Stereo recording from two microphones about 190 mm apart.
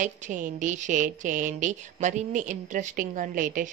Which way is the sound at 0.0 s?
40° right (ahead or behind).